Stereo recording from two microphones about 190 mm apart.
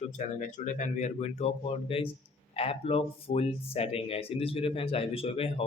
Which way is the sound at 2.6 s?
30° left (ahead or behind).